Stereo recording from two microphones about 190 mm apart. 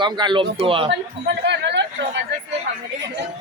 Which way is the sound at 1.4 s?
65° right (ahead or behind).